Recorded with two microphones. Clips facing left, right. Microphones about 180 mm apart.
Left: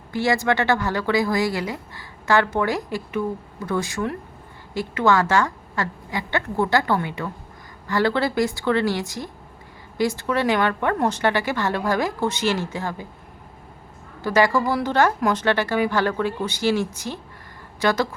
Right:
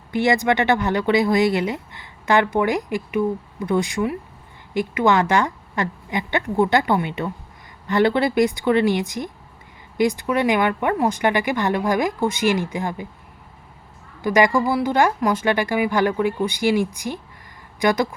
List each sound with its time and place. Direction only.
0.1 s a woman's voice: 20° right (ahead or behind)
14.2 s a woman's voice: 15° right (ahead or behind)